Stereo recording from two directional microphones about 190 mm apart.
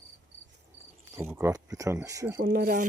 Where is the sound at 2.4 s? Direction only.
50° right (ahead or behind).